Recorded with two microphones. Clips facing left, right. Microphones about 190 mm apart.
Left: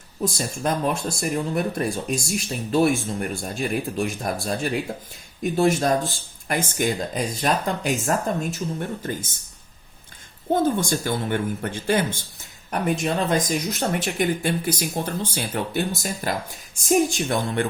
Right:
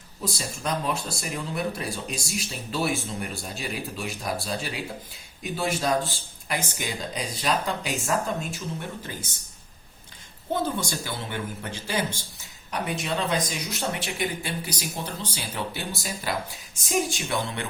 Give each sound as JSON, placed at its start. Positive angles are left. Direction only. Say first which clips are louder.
{"t": 0.3, "sound": "speech", "louder": "left 3 dB", "side_deg": 50}
{"t": 10.5, "sound": "speech", "louder": "left 7 dB", "side_deg": 50}